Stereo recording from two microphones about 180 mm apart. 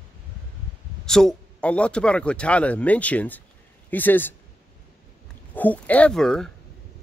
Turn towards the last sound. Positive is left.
turn(degrees=5)  # may be behind; listen again after turning